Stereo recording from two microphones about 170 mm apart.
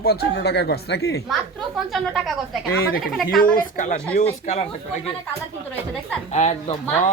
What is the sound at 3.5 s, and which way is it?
Speech, 50° left (ahead or behind).